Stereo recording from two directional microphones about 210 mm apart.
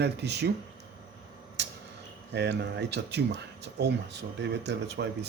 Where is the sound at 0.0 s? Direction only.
55° right (ahead or behind).